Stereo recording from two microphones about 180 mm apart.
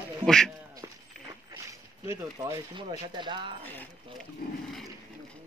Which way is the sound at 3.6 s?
10° left (ahead or behind).